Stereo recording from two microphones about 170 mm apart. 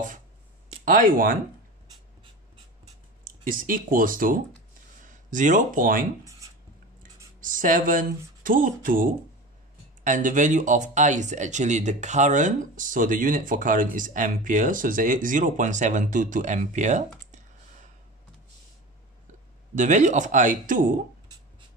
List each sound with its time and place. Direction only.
0.8 s speech: 55° right (ahead or behind)
3.3 s speech: 55° right (ahead or behind)
7.3 s speech: 50° right (ahead or behind)
19.7 s speech: 45° right (ahead or behind)